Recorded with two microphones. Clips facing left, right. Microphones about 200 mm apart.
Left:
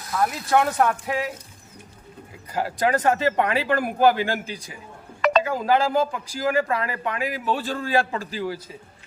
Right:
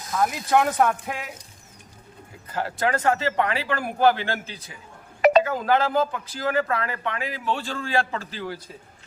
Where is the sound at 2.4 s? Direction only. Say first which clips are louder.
Left 2 dB; 10° left (ahead or behind).